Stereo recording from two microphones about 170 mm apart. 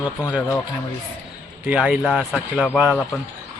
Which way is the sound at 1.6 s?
5° right (ahead or behind).